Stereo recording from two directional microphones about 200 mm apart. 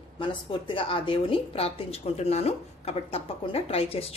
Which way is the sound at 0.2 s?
25° left (ahead or behind).